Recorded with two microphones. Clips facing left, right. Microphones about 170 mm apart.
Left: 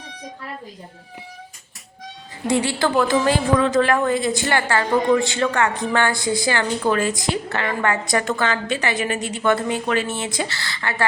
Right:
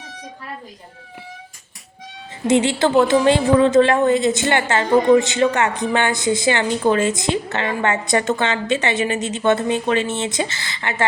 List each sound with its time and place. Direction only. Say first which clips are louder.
2.5 s a woman's voice: right 4 dB; 20° right (ahead or behind)